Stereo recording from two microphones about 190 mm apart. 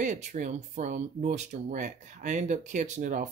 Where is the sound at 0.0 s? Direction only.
40° right (ahead or behind).